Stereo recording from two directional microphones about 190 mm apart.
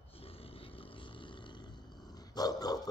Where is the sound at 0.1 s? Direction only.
30° left (ahead or behind).